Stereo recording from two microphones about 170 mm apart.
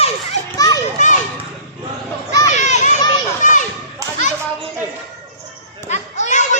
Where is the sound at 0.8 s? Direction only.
45° left (ahead or behind).